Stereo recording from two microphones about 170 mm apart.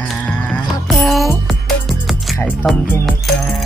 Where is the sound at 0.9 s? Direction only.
Centre (ahead or behind).